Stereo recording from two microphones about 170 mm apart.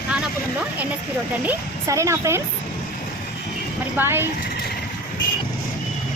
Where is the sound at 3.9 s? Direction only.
15° right (ahead or behind).